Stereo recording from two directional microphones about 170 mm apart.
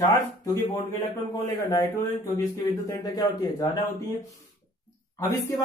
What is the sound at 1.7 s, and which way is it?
Speech, 20° left (ahead or behind).